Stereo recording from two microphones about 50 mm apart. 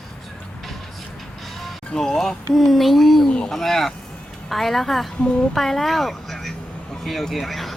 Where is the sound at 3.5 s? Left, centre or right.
Centre.